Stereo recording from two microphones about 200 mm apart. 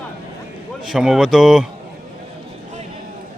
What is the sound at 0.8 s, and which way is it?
Speech, centre (ahead or behind).